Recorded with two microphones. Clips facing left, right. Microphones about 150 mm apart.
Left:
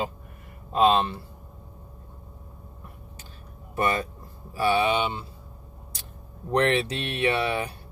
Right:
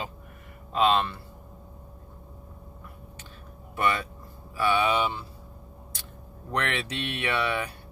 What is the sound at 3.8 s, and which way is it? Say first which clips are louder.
Speech: left 2 dB; 40° left (ahead or behind).